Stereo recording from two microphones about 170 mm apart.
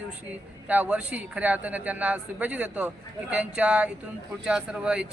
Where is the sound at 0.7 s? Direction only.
10° right (ahead or behind).